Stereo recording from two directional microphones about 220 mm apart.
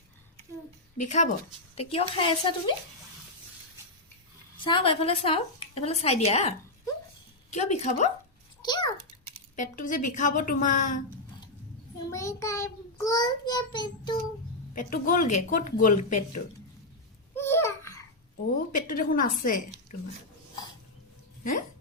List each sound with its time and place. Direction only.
0.9 s a woman's voice: 35° left (ahead or behind)
4.6 s a woman's voice: 25° left (ahead or behind)
7.5 s speech: 30° left (ahead or behind)
8.6 s a sound: 20° left (ahead or behind)
9.6 s speech: 35° left (ahead or behind)
12.1 s a child's voice: 15° left (ahead or behind)
14.8 s speech: 40° left (ahead or behind)
17.3 s babbling: 10° left (ahead or behind)
18.7 s speech: 40° left (ahead or behind)